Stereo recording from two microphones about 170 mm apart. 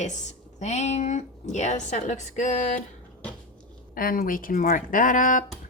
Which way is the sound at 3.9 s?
60° left (ahead or behind).